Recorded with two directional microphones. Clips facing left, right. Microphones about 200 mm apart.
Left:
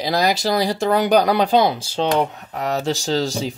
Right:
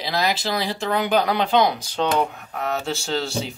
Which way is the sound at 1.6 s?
30° left (ahead or behind).